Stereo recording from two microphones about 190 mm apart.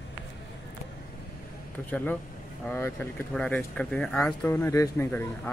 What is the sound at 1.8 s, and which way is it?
Speech, 10° left (ahead or behind).